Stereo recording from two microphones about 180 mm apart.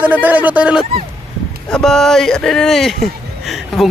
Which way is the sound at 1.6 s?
5° left (ahead or behind).